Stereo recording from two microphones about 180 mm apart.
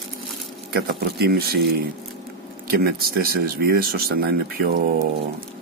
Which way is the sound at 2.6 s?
60° right (ahead or behind).